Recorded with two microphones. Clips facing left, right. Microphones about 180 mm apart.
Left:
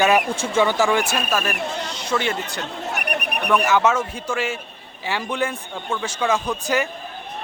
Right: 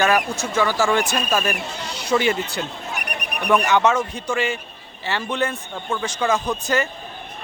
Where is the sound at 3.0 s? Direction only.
55° left (ahead or behind).